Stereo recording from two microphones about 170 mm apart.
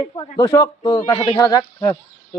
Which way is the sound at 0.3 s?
20° left (ahead or behind).